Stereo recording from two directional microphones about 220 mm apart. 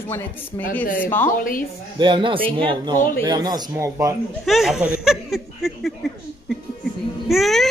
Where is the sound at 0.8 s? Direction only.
40° left (ahead or behind).